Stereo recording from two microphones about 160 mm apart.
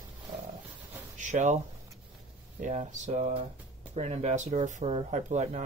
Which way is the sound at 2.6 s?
50° right (ahead or behind).